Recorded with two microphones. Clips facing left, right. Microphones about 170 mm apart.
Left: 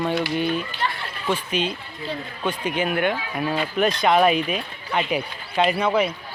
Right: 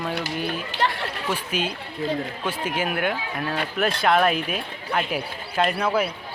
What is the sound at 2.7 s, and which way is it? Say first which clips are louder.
Speech: left 3 dB; 5° right (ahead or behind).